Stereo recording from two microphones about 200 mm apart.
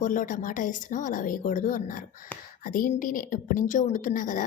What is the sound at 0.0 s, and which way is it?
A woman's voice, 40° left (ahead or behind).